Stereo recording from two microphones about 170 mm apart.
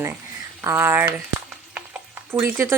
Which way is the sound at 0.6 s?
15° right (ahead or behind).